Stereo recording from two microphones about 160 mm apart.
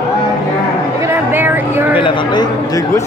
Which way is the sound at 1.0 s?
15° right (ahead or behind).